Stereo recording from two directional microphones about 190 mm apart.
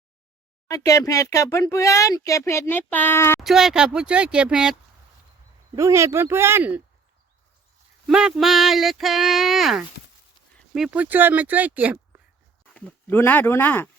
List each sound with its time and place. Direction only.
0.7 s speech: 15° left (ahead or behind)
3.4 s speech: centre (ahead or behind)
5.7 s speech: 15° right (ahead or behind)
8.0 s speech: 5° right (ahead or behind)
12.7 s speech: 10° left (ahead or behind)